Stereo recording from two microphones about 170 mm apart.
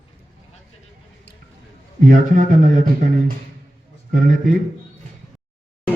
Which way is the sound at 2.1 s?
50° right (ahead or behind).